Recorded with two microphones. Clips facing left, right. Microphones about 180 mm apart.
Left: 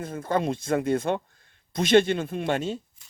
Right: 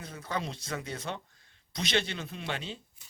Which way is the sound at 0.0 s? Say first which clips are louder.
Left 10 dB; 50° left (ahead or behind).